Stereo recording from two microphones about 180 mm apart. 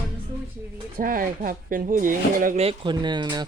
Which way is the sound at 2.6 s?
25° right (ahead or behind).